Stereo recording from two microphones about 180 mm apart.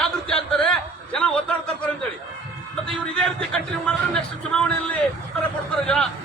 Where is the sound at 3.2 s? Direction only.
5° left (ahead or behind).